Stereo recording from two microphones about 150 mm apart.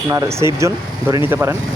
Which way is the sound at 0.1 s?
20° right (ahead or behind).